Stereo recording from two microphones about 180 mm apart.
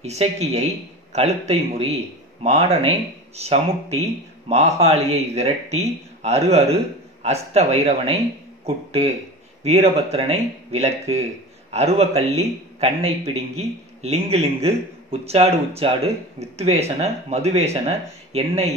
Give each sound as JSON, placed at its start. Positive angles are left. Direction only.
{"t": 0.0, "sound": "a man's voice", "side_deg": -35}